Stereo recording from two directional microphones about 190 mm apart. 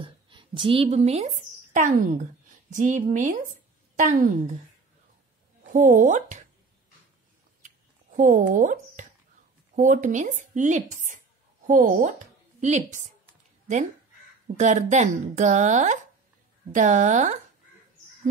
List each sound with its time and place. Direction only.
0.0 s a woman's voice: 25° right (ahead or behind); by 4.3 s 45° right (ahead or behind)
5.7 s speech: 40° right (ahead or behind)
7.6 s a sound: 45° right (ahead or behind)
8.5 s a woman's voice: 40° right (ahead or behind)
14.6 s speech: 40° right (ahead or behind)